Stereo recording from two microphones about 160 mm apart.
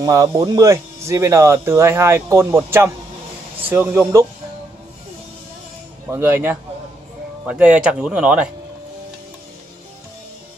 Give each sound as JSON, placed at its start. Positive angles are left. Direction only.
{"t": 0.0, "sound": "speech", "side_deg": -20}
{"t": 6.0, "sound": "speech", "side_deg": -15}